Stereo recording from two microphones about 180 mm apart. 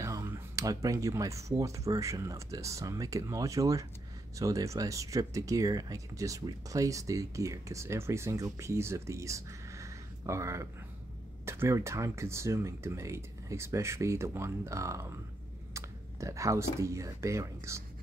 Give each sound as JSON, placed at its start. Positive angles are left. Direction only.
{"t": 0.0, "sound": "speech", "side_deg": -15}